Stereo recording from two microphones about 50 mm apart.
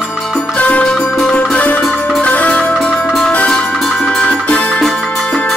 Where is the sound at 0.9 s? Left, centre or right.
Centre.